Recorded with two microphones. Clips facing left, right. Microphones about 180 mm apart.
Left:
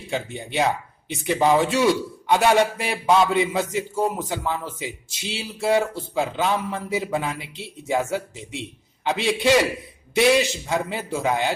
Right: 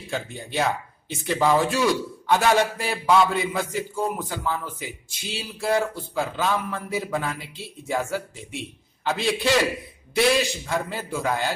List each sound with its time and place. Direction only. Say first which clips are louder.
0.1 s a man's voice: left 2 dB; 20° left (ahead or behind)